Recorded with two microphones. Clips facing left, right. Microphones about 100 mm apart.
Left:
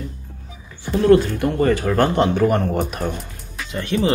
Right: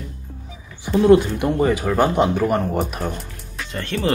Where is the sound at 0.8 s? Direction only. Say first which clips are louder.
Right 1 dB; 15° right (ahead or behind).